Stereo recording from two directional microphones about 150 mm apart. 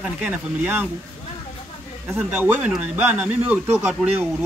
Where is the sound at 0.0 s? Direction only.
10° right (ahead or behind).